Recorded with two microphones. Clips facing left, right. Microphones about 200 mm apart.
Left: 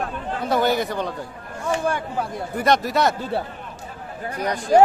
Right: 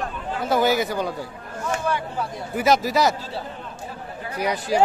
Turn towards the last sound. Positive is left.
turn(degrees=-10)  # may be behind; listen again after turning